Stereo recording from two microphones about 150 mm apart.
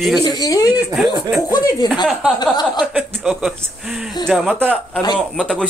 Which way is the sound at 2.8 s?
5° right (ahead or behind).